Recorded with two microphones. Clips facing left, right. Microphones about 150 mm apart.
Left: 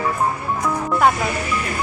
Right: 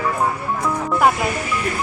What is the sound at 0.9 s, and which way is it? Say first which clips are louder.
Music: even; 5° right (ahead or behind).